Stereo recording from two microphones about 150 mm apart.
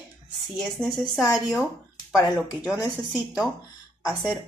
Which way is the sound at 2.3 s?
Centre (ahead or behind).